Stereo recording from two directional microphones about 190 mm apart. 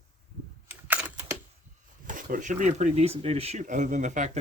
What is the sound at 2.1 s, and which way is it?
Speech, 45° right (ahead or behind).